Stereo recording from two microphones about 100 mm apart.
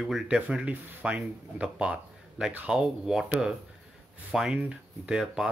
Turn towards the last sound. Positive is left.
turn(degrees=-5)  # may be behind; listen again after turning